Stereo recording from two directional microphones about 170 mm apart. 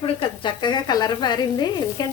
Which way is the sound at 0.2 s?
25° left (ahead or behind).